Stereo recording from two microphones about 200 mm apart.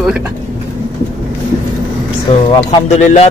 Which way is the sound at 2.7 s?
35° left (ahead or behind).